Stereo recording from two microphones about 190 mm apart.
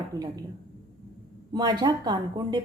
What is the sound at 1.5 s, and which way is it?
A woman's voice, 20° right (ahead or behind).